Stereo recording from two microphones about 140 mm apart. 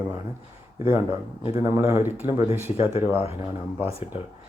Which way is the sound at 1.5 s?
45° left (ahead or behind).